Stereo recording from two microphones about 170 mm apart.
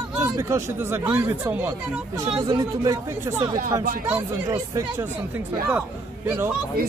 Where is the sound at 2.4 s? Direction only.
25° right (ahead or behind).